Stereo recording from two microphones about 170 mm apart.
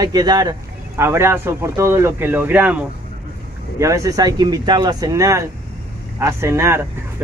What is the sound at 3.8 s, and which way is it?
Speech, 20° right (ahead or behind).